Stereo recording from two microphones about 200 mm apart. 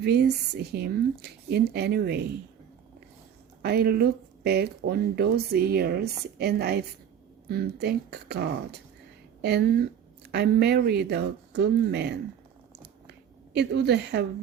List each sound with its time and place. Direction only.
0.0 s a woman's voice: 55° right (ahead or behind)
3.6 s a woman's voice: 55° right (ahead or behind)
13.1 s a sound: 55° right (ahead or behind)